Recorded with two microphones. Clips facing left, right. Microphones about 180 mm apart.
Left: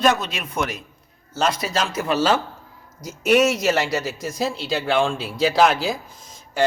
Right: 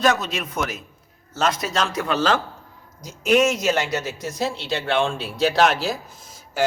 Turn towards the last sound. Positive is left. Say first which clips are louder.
# left 2 dB
turn(degrees=-5)  # may be behind; listen again after turning